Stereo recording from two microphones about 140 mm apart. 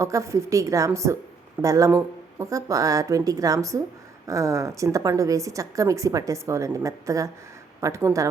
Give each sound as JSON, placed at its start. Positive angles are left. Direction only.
{"t": 0.0, "sound": "a woman's voice", "side_deg": -20}